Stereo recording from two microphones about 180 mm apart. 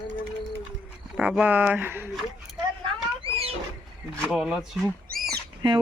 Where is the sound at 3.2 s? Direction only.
35° right (ahead or behind).